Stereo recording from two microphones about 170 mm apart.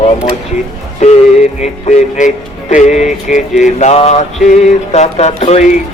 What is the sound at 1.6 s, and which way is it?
Speech, 45° left (ahead or behind).